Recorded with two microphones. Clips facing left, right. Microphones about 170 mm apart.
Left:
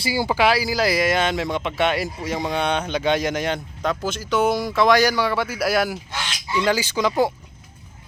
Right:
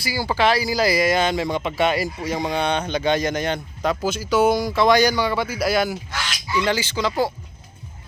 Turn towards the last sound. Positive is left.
turn(degrees=15)  # may be behind; listen again after turning